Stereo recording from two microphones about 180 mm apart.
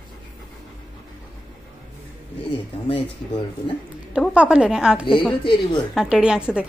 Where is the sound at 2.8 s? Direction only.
30° left (ahead or behind).